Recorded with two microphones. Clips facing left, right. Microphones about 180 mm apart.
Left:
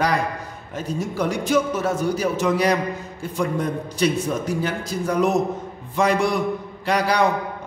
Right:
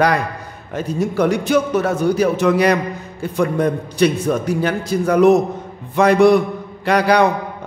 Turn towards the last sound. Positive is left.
turn(degrees=-65)  # may be behind; listen again after turning